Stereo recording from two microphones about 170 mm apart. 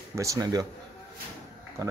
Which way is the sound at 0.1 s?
20° right (ahead or behind).